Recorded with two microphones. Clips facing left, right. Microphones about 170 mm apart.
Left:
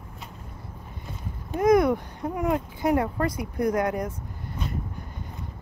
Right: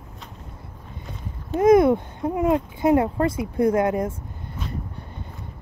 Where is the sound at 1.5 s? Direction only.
25° right (ahead or behind).